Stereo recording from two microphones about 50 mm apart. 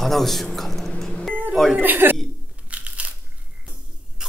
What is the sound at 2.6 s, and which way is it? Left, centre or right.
Crumpling, right.